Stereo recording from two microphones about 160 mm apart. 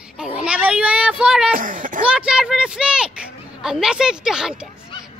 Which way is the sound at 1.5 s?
60° right (ahead or behind).